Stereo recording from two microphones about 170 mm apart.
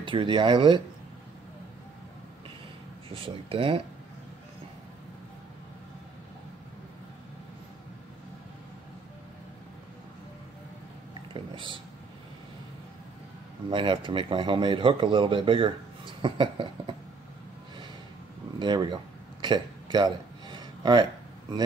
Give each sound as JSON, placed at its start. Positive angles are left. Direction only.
{"t": 0.0, "sound": "speech", "side_deg": -30}
{"t": 3.1, "sound": "speech", "side_deg": -35}
{"t": 11.3, "sound": "a sound", "side_deg": -30}
{"t": 13.7, "sound": "speech", "side_deg": -30}
{"t": 18.6, "sound": "speech", "side_deg": -25}
{"t": 19.4, "sound": "a sound", "side_deg": -25}